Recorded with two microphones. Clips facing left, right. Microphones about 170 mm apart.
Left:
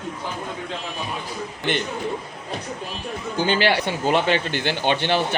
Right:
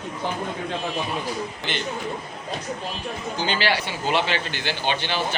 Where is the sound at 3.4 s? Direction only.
55° left (ahead or behind).